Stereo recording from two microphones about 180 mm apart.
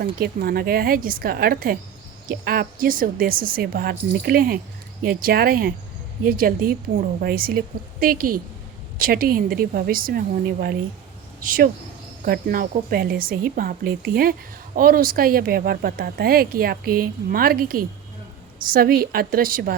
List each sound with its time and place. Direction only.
0.0 s speech: 55° right (ahead or behind)